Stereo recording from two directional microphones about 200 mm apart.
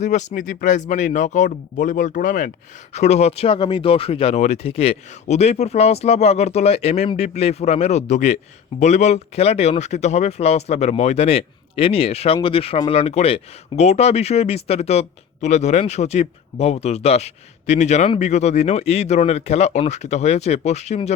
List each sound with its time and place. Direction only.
0.0 s speech: 35° left (ahead or behind)